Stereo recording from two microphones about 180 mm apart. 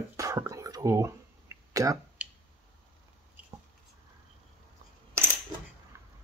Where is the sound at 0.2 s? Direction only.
15° right (ahead or behind).